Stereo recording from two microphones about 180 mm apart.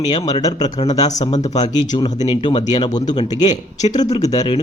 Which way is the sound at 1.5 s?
25° left (ahead or behind).